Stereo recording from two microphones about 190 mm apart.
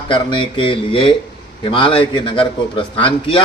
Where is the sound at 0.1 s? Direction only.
25° left (ahead or behind).